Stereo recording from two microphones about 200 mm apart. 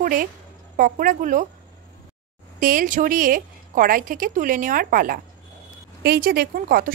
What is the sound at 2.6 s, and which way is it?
Speech, 45° right (ahead or behind).